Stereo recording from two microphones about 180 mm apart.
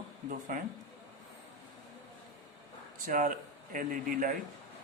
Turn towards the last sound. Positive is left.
turn(degrees=-50)  # may be behind; listen again after turning